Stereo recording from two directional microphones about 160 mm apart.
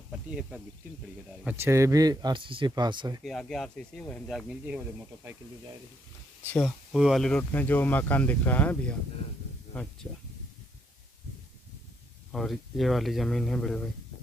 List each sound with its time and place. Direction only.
0.3 s speech: 5° right (ahead or behind); by 3.2 s 30° right (ahead or behind)
3.3 s speech: 5° left (ahead or behind)
6.4 s speech: 10° left (ahead or behind)
6.9 s speech: centre (ahead or behind)
10.0 s speech: 5° left (ahead or behind)
12.3 s speech: centre (ahead or behind)